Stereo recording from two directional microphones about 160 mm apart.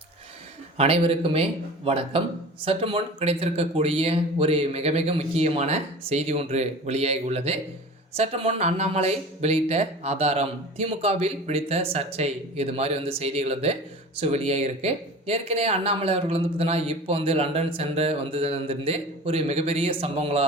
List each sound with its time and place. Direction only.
0.8 s a man's voice: 35° right (ahead or behind)